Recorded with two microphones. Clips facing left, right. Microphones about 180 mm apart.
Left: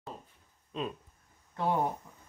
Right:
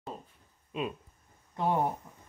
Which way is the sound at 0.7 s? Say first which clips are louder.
Right 2 dB; 10° right (ahead or behind).